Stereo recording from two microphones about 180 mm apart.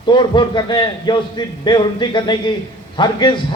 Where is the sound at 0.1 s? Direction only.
25° left (ahead or behind).